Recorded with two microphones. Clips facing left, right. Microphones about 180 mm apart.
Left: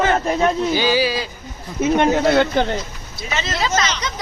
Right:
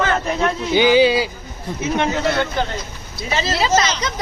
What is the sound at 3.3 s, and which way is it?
Speech, 30° right (ahead or behind).